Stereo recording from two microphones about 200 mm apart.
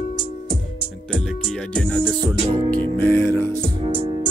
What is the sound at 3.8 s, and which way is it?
Music, 30° right (ahead or behind).